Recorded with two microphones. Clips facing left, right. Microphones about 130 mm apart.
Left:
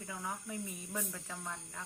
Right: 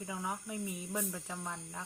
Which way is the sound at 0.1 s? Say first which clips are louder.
Right 2 dB; 15° right (ahead or behind).